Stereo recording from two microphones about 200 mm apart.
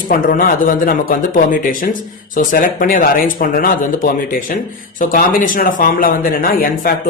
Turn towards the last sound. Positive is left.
turn(degrees=45)  # may be behind; listen again after turning